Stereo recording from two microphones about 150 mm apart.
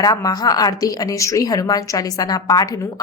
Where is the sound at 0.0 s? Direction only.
25° left (ahead or behind).